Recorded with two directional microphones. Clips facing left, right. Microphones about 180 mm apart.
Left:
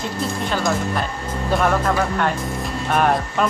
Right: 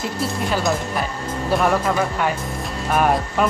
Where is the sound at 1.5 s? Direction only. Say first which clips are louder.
Even; 5° right (ahead or behind).